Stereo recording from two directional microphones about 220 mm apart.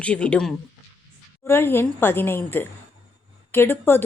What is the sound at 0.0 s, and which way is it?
A woman's voice, 5° left (ahead or behind).